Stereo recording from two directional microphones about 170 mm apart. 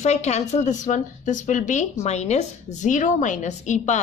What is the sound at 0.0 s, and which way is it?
A woman's voice, 40° left (ahead or behind).